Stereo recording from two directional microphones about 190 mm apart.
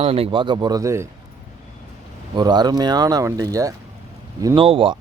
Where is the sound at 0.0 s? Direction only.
30° right (ahead or behind); by 1.0 s 15° right (ahead or behind).